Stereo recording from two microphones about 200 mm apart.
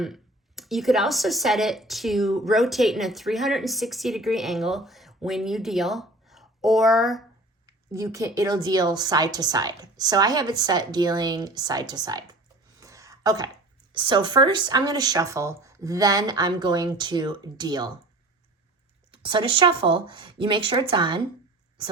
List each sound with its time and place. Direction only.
0.0 s speech: centre (ahead or behind)
7.7 s a woman's voice: 15° right (ahead or behind)
12.8 s a sound: 15° right (ahead or behind)
13.9 s a woman's voice: 25° right (ahead or behind)
19.1 s a woman's voice: 25° right (ahead or behind)